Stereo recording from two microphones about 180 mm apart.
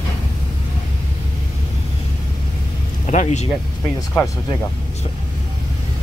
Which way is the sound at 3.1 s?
40° left (ahead or behind).